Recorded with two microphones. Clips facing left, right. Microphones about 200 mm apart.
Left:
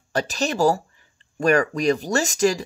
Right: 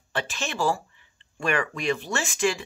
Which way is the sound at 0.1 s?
40° left (ahead or behind).